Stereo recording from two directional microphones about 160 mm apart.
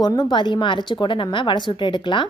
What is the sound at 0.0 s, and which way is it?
Speech, 25° left (ahead or behind).